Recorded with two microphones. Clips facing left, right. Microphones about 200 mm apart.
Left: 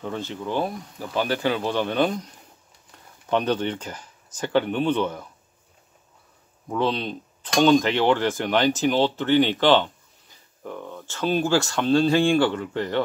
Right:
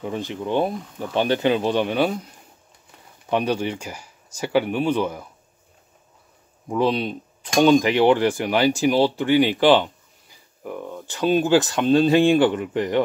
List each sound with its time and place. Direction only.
0.0 s speech: 15° right (ahead or behind)
6.7 s speech: 10° right (ahead or behind)